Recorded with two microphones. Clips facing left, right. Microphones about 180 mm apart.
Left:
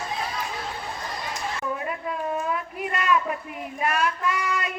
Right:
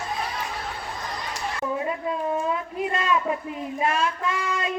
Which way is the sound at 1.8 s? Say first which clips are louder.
Right 3 dB; 25° right (ahead or behind).